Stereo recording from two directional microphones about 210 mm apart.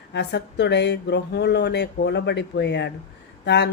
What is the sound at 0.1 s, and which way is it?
Speech, 55° left (ahead or behind).